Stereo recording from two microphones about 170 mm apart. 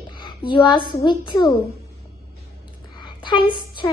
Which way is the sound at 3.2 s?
30° left (ahead or behind).